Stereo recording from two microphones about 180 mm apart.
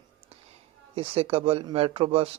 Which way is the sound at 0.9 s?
30° right (ahead or behind).